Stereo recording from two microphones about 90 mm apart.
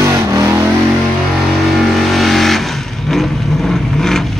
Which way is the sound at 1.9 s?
Centre (ahead or behind).